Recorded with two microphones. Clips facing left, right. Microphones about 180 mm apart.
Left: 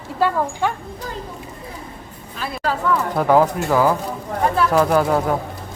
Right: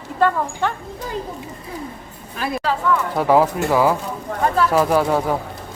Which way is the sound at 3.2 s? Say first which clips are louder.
Even; 5° right (ahead or behind).